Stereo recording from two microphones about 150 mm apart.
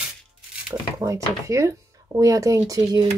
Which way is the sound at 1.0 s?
20° right (ahead or behind).